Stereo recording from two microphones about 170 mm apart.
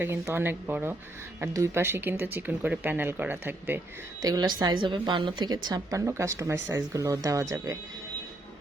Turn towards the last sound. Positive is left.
turn(degrees=-20)  # may be behind; listen again after turning